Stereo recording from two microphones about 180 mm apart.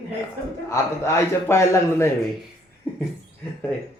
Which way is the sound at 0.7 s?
15° left (ahead or behind).